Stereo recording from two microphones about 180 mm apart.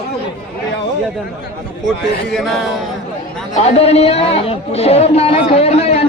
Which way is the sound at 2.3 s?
Centre (ahead or behind).